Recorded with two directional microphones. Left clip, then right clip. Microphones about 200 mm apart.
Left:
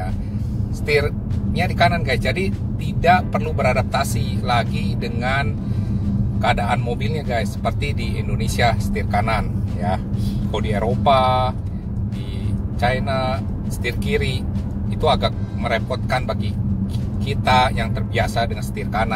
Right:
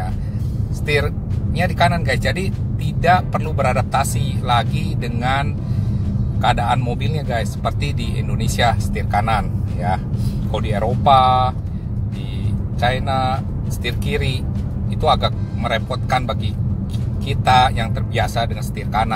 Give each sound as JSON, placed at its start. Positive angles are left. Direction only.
{"t": 0.8, "sound": "speech", "side_deg": -15}
{"t": 10.5, "sound": "speech", "side_deg": -15}
{"t": 12.8, "sound": "speech", "side_deg": -15}